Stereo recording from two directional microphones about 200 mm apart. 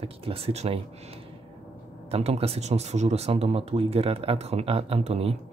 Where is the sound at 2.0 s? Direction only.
30° right (ahead or behind).